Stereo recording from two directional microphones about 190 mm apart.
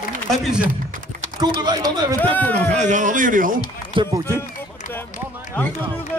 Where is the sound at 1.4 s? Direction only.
20° right (ahead or behind).